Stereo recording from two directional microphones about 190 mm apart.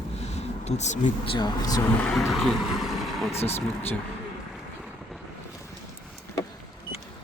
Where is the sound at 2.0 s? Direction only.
5° left (ahead or behind).